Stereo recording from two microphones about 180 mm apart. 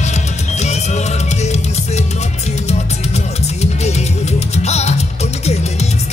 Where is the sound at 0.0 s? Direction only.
40° left (ahead or behind).